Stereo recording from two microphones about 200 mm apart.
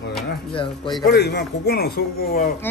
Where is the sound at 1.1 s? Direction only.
55° left (ahead or behind).